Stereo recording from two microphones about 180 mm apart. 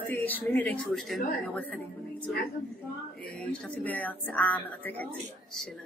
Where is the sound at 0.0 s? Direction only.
10° left (ahead or behind).